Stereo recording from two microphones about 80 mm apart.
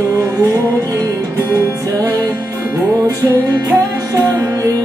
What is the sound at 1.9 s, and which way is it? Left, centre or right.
Music, right.